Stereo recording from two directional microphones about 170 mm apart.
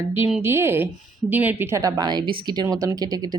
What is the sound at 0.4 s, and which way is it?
A woman's voice, 15° right (ahead or behind).